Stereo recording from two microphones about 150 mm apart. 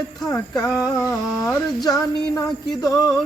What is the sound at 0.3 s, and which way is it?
Speech, 20° left (ahead or behind).